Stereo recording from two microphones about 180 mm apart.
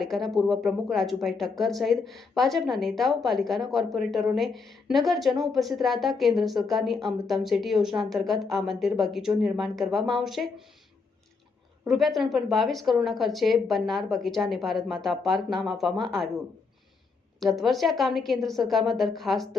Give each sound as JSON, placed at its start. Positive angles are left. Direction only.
{"t": 0.0, "sound": "a woman's voice", "side_deg": 0}
{"t": 11.9, "sound": "a woman's voice", "side_deg": 0}
{"t": 17.6, "sound": "a woman's voice", "side_deg": 0}